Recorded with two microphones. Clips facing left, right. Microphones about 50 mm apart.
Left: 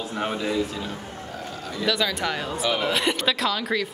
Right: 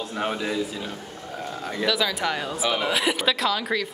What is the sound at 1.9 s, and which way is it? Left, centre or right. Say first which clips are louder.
A woman's voice: even; centre.